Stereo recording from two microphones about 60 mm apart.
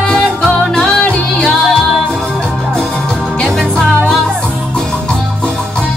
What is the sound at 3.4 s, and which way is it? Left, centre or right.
Music, centre.